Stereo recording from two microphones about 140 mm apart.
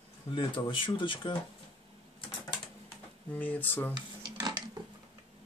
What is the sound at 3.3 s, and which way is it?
Speech, 10° left (ahead or behind).